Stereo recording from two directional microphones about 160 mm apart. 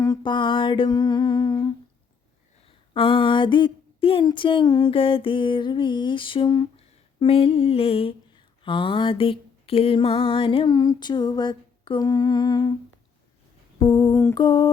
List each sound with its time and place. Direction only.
0.0 s humming: 25° left (ahead or behind)
2.6 s mantra: 35° left (ahead or behind)
13.7 s humming: 25° left (ahead or behind)